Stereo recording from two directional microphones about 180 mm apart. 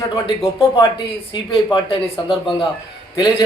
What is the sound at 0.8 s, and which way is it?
A man's voice, 25° left (ahead or behind).